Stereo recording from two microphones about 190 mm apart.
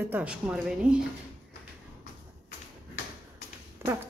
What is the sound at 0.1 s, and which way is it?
Speech, 5° right (ahead or behind).